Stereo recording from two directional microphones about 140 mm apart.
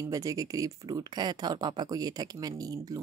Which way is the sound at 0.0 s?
25° right (ahead or behind).